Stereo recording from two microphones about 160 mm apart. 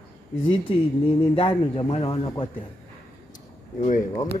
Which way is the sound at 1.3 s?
35° left (ahead or behind).